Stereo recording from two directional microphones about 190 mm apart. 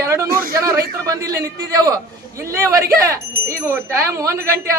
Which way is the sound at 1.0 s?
15° right (ahead or behind).